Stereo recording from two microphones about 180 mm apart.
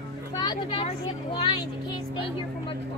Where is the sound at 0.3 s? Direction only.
20° left (ahead or behind).